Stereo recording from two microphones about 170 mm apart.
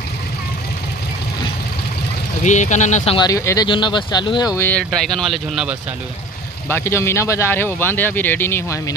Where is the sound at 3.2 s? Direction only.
20° left (ahead or behind).